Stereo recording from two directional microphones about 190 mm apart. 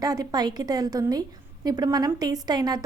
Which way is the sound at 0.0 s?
20° right (ahead or behind).